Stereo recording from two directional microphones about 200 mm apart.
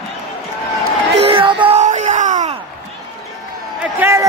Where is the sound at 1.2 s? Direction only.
25° right (ahead or behind).